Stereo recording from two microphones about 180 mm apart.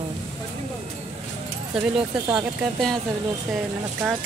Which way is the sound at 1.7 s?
Centre (ahead or behind).